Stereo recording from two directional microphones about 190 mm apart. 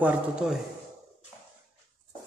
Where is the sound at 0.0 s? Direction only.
5° right (ahead or behind).